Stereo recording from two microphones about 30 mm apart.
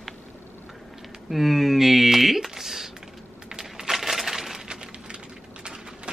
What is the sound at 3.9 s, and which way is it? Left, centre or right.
Coin, centre.